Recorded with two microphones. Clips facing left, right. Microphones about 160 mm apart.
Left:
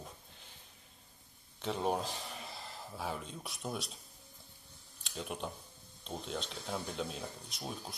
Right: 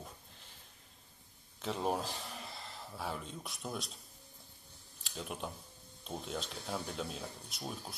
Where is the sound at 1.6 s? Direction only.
Centre (ahead or behind).